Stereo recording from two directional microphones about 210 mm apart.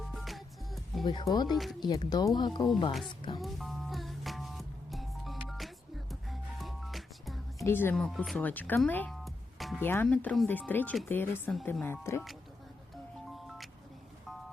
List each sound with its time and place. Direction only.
0.0 s music: centre (ahead or behind)
1.0 s speech: 20° left (ahead or behind)
3.4 s music: centre (ahead or behind)
7.6 s speech: 10° left (ahead or behind)